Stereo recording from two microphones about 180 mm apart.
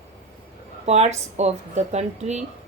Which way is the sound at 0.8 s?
40° right (ahead or behind).